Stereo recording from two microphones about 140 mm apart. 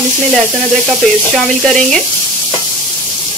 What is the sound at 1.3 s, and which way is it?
Frying, 5° left (ahead or behind).